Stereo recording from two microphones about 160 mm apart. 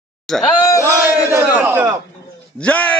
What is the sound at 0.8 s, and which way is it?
Speech, 15° right (ahead or behind).